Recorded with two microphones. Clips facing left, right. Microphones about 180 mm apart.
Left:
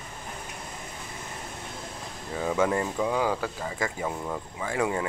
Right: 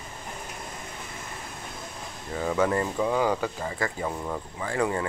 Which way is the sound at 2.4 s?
10° left (ahead or behind).